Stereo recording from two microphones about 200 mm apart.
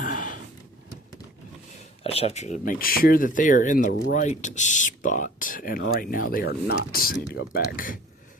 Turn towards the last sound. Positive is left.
turn(degrees=45)  # may be behind; listen again after turning